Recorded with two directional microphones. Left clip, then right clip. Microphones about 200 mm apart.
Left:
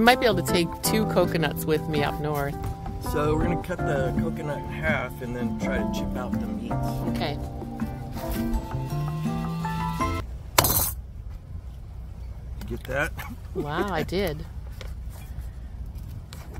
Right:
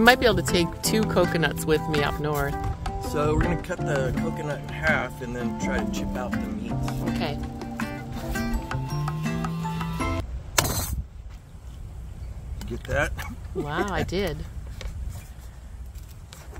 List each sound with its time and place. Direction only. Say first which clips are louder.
0.0 s speech: right 1 dB; 5° right (ahead or behind)
7.7 s music: right 4 dB; 20° right (ahead or behind)
8.6 s music: right 2 dB; centre (ahead or behind)
10.7 s a sound: left 3 dB; 50° left (ahead or behind)
12.5 s speech: right 1 dB; 5° left (ahead or behind)